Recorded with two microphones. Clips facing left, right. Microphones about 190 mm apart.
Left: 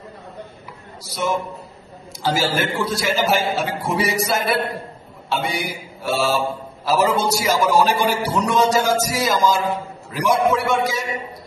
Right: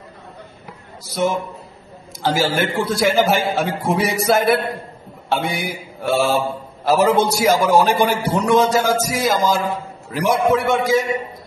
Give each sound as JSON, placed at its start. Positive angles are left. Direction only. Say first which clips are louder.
{"t": 1.0, "sound": "a man's voice", "louder": "right 3 dB", "side_deg": -55}